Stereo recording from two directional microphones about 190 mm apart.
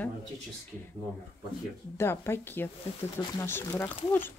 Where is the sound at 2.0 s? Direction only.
15° left (ahead or behind).